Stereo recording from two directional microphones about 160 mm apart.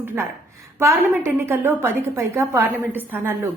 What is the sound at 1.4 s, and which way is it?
A woman's voice, 15° right (ahead or behind).